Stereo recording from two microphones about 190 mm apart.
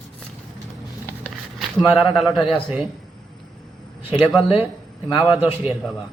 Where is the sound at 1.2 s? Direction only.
5° right (ahead or behind).